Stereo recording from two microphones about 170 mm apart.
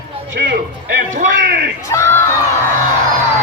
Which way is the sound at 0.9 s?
60° right (ahead or behind).